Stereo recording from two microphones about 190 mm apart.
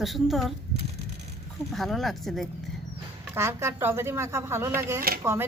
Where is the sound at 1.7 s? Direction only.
Centre (ahead or behind).